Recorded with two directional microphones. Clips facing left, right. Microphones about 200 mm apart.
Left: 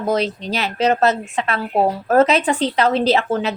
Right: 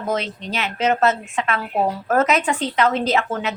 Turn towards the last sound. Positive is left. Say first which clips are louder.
# left 4 dB
turn(degrees=30)  # may be behind; listen again after turning